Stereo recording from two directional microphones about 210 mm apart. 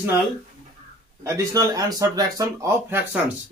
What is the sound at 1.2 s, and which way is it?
Speech, 15° right (ahead or behind).